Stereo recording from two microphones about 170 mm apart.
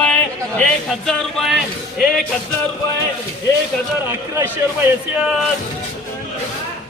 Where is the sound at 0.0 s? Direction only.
5° left (ahead or behind).